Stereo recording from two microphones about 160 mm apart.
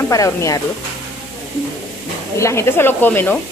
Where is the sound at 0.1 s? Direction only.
20° left (ahead or behind).